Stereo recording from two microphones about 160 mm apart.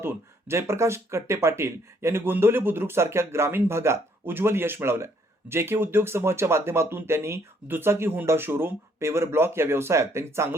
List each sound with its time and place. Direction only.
0.0 s speech: 15° right (ahead or behind)